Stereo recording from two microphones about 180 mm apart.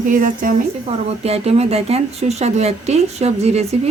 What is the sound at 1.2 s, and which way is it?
Speech, 35° right (ahead or behind).